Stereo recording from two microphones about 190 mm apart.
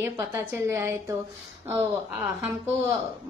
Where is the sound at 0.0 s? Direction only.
15° right (ahead or behind).